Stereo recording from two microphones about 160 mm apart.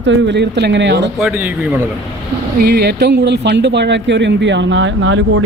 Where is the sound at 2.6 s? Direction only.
80° right.